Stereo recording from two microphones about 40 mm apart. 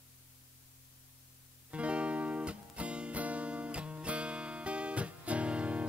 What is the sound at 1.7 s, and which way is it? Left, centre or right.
Music, right.